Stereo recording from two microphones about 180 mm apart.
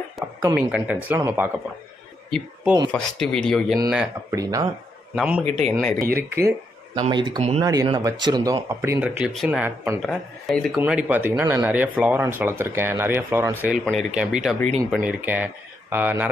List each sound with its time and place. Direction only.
0.6 s speech: 5° right (ahead or behind)
2.9 s speech: 5° left (ahead or behind)
4.3 s speech: 20° right (ahead or behind)
5.1 s a man's voice: 5° right (ahead or behind)
6.1 s speech: 15° right (ahead or behind)
7.0 s speech: 25° right (ahead or behind)
7.6 s speech: 20° right (ahead or behind)